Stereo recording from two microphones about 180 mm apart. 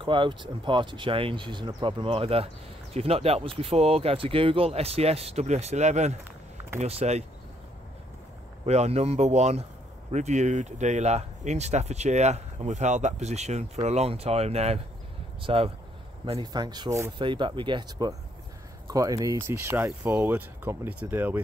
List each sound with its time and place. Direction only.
0.0 s speech: 25° right (ahead or behind)
8.6 s speech: 35° right (ahead or behind); by 21.4 s 10° right (ahead or behind)